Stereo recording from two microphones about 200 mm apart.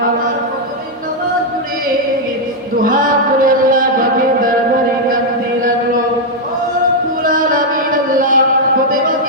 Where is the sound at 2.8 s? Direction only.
45° right (ahead or behind).